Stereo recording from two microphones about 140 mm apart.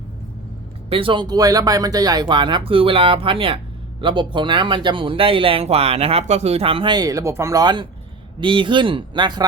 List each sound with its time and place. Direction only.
0.9 s speech: 40° right (ahead or behind)